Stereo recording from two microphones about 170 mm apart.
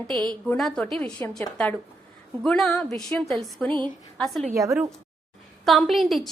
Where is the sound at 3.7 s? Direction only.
25° right (ahead or behind).